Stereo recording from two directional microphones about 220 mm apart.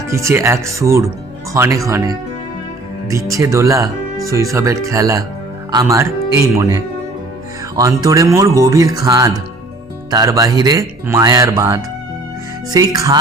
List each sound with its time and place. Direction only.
0.1 s speech: 15° right (ahead or behind)